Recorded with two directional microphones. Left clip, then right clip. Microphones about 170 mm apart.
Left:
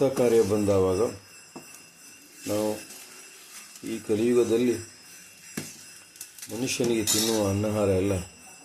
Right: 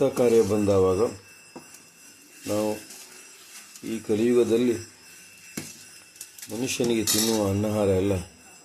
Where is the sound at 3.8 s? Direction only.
15° right (ahead or behind).